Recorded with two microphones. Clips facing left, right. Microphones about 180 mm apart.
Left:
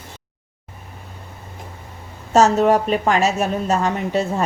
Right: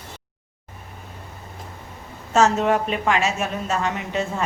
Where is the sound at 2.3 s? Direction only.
40° left (ahead or behind).